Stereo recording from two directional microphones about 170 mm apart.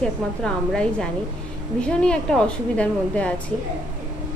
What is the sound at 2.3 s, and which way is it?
A woman's voice, 5° left (ahead or behind).